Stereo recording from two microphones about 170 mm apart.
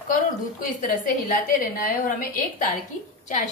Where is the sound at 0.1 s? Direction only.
50° left (ahead or behind).